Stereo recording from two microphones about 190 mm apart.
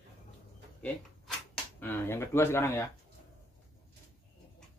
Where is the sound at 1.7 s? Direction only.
10° left (ahead or behind).